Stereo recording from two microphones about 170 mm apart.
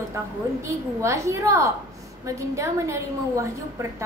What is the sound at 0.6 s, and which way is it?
A woman's voice, 15° right (ahead or behind).